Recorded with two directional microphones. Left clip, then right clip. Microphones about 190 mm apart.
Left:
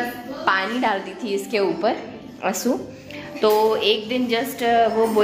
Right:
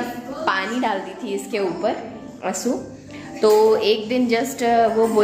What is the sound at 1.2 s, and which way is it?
A woman's voice, 25° left (ahead or behind).